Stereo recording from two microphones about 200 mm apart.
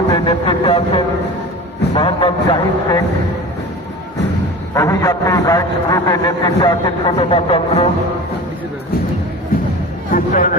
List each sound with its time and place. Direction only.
0.1 s speech: 20° left (ahead or behind)
4.7 s a man's voice: 15° left (ahead or behind)
10.1 s speech: 45° left (ahead or behind)